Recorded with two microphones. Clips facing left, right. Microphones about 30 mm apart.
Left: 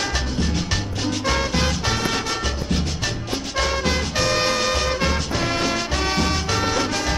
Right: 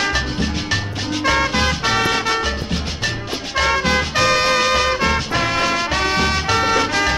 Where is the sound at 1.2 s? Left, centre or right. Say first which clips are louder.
Right 6 dB; right.